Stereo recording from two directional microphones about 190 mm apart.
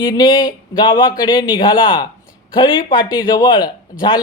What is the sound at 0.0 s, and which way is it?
A man's voice, 20° left (ahead or behind).